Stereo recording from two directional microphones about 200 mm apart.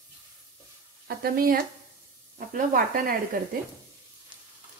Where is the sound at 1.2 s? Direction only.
45° right (ahead or behind).